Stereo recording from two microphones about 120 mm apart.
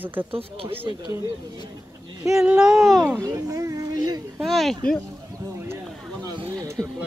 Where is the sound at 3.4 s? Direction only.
30° right (ahead or behind).